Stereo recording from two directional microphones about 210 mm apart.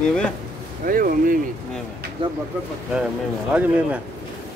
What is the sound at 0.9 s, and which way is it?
Speech, 40° right (ahead or behind).